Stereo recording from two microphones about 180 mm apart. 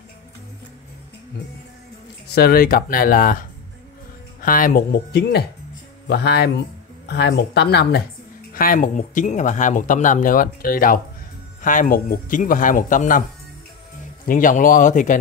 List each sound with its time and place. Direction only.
2.3 s speech: 60° left (ahead or behind)
8.5 s speech: 50° left (ahead or behind)
14.2 s speech: 50° left (ahead or behind)